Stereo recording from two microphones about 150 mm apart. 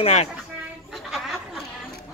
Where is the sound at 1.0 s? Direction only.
Centre (ahead or behind).